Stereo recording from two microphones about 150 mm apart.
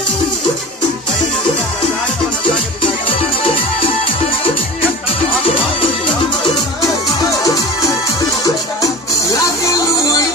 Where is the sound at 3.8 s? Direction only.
40° left (ahead or behind).